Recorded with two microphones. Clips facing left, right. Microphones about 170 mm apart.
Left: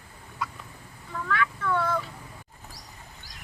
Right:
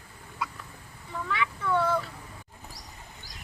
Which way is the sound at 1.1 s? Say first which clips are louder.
Left 1 dB; 20° right (ahead or behind).